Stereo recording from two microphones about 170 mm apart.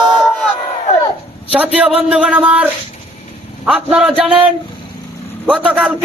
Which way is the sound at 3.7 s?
5° right (ahead or behind).